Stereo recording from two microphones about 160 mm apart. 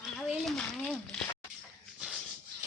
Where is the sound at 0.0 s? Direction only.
Centre (ahead or behind).